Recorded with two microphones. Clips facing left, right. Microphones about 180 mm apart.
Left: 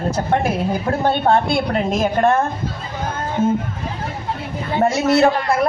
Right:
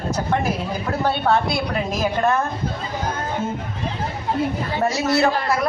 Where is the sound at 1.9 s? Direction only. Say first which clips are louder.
Left 4 dB; 25° left (ahead or behind).